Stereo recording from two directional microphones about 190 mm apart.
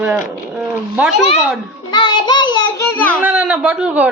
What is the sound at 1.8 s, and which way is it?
A child's voice, 25° left (ahead or behind).